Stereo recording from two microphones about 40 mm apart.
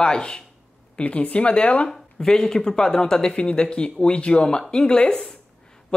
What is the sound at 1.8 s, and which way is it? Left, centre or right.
Speech, centre.